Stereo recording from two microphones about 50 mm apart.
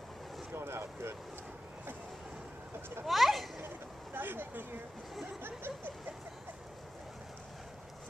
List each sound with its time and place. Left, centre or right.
0.5 s speech: right
3.1 s speech: centre
3.6 s speech: right